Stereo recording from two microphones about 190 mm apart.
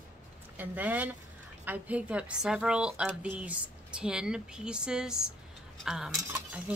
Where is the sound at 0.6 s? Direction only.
10° right (ahead or behind).